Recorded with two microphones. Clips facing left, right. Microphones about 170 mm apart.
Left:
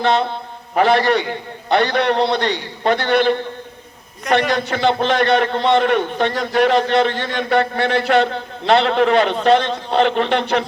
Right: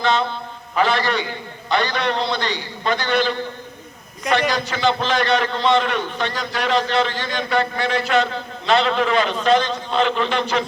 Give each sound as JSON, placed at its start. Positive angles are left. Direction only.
{"t": 0.0, "sound": "a man's voice", "side_deg": 60}